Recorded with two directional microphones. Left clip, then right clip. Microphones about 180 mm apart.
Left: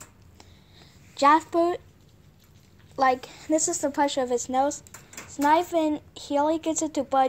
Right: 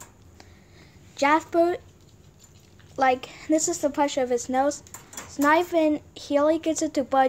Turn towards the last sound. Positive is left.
turn(degrees=0)  # may be behind; listen again after turning